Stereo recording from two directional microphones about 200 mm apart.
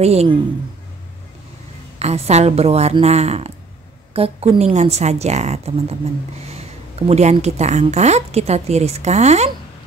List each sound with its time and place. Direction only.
0.0 s a woman's voice: 30° right (ahead or behind)
2.0 s a woman's voice: 30° right (ahead or behind)